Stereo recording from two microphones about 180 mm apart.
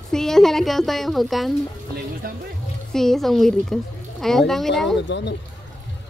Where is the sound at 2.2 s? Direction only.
55° right (ahead or behind).